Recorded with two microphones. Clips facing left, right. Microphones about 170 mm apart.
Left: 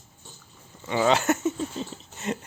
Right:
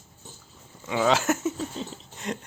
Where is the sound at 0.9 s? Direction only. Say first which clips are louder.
Left 1 dB; centre (ahead or behind).